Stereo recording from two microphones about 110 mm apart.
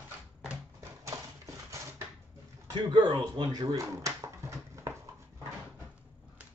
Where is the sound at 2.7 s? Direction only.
45° right (ahead or behind); by 4.9 s 25° right (ahead or behind).